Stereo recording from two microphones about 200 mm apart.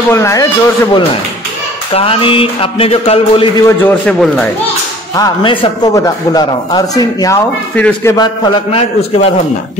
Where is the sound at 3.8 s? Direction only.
5° left (ahead or behind).